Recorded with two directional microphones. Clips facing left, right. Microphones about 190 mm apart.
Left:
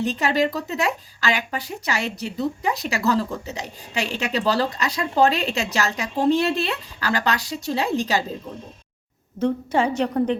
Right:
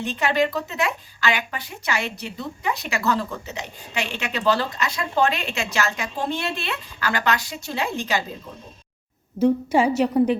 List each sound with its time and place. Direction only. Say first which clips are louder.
0.0 s speech: left 1 dB; 40° left (ahead or behind)
9.4 s a woman's voice: right 3 dB; 10° right (ahead or behind)